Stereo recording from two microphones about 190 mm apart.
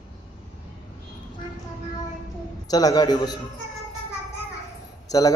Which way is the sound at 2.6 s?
20° left (ahead or behind).